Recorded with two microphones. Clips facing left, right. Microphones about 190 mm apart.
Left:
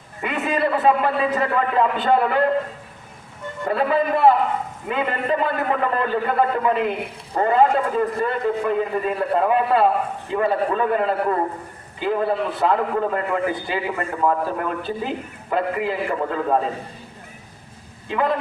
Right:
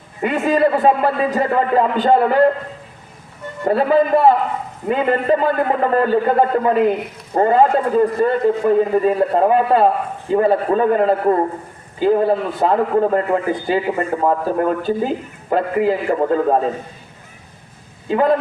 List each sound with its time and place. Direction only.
0.2 s speech: 40° right (ahead or behind)
3.7 s speech: 40° right (ahead or behind)
18.1 s speech: 40° right (ahead or behind)